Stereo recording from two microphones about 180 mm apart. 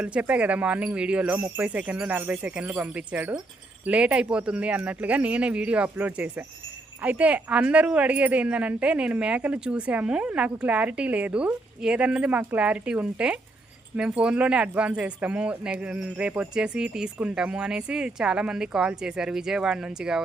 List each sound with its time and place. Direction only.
0.0 s speech: 5° right (ahead or behind)